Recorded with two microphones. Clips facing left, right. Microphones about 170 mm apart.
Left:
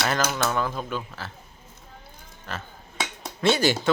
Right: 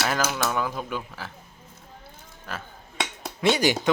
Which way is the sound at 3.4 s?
15° right (ahead or behind).